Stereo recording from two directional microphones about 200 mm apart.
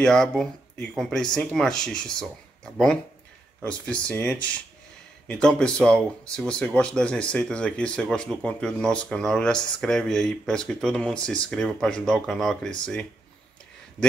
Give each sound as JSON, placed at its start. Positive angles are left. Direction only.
{"t": 0.0, "sound": "speech", "side_deg": 5}